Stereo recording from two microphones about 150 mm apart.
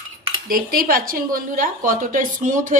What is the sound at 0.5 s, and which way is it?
A woman's voice, 75° right (ahead or behind).